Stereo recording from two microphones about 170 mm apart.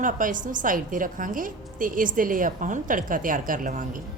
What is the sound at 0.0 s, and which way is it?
A woman's voice, 50° right (ahead or behind).